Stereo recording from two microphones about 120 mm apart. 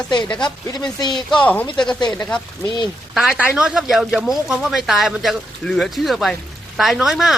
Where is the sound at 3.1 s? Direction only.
5° right (ahead or behind).